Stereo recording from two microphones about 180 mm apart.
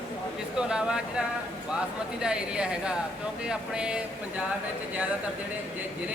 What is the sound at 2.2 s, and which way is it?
A woman's voice, 5° right (ahead or behind).